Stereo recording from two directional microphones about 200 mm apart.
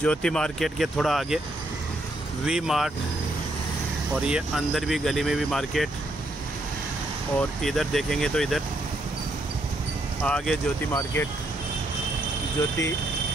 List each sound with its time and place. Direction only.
0.0 s speech: 5° left (ahead or behind)
2.4 s speech: 5° right (ahead or behind)
4.3 s speech: 5° right (ahead or behind)
7.3 s speech: centre (ahead or behind)
10.2 s speech: 5° left (ahead or behind)
10.9 s speech: 15° left (ahead or behind)